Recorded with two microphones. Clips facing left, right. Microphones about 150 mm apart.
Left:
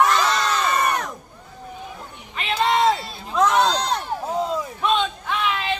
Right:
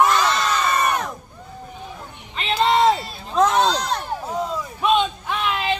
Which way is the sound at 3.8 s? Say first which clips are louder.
Left 1 dB; 25° left (ahead or behind).